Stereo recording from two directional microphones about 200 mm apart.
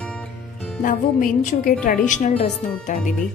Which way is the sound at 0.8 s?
45° left (ahead or behind).